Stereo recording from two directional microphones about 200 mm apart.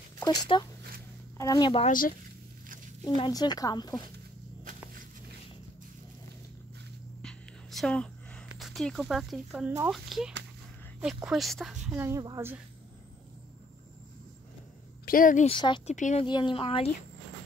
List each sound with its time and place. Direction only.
0.2 s speech: 20° left (ahead or behind)
1.9 s speech: 45° left (ahead or behind)
3.2 s speech: 20° left (ahead or behind)
7.2 s a sound: 5° left (ahead or behind)
8.5 s speech: centre (ahead or behind)
12.0 s speech: 15° right (ahead or behind)
15.0 s speech: 45° left (ahead or behind)
15.4 s speech: 25° left (ahead or behind)
15.9 s speech: 35° left (ahead or behind)
16.3 s speech: 25° left (ahead or behind)